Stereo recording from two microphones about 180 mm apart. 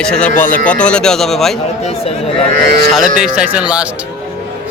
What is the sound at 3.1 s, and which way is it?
Speech, 5° right (ahead or behind).